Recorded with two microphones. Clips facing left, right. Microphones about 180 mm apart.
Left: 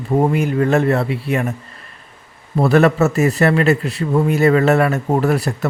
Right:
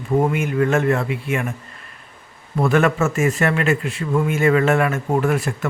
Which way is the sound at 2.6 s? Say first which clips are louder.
Left 4 dB; 35° left (ahead or behind).